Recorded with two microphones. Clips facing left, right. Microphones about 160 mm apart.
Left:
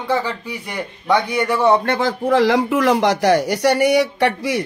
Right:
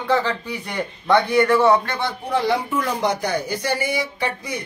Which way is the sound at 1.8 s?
90° left.